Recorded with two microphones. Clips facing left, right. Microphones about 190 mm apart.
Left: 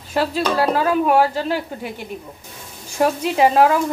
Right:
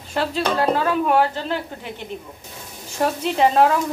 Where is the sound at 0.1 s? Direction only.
5° left (ahead or behind).